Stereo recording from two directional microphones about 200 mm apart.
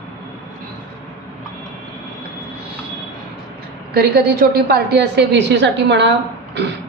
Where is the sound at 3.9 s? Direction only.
50° right (ahead or behind).